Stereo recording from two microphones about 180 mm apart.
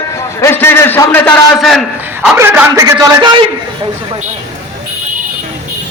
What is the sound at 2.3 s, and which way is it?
A man's voice, 15° right (ahead or behind).